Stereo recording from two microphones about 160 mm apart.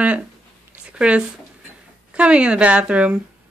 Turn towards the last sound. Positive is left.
turn(degrees=-5)  # may be behind; listen again after turning